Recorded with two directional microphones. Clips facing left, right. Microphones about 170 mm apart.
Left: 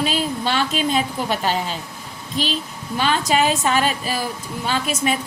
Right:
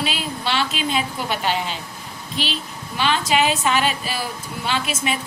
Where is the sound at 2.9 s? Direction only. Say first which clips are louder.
Left 1 dB; 40° left (ahead or behind).